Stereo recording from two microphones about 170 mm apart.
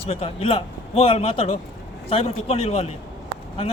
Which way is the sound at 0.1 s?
35° left (ahead or behind).